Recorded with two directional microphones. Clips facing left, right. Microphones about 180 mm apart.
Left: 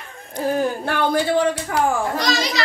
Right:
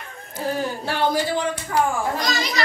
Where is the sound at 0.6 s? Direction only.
55° left (ahead or behind).